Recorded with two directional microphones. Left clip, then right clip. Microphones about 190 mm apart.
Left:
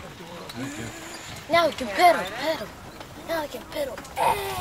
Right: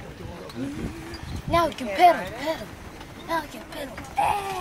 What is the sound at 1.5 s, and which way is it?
Speech, 15° left (ahead or behind).